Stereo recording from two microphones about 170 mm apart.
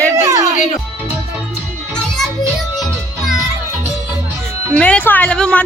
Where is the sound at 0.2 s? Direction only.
20° right (ahead or behind).